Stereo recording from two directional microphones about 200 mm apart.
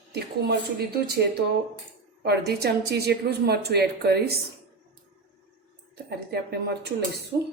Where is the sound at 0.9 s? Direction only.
55° right (ahead or behind).